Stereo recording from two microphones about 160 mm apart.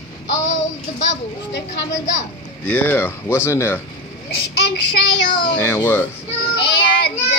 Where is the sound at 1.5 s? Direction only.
90° left.